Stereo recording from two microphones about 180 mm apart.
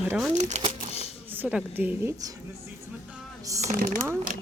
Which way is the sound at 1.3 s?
10° right (ahead or behind).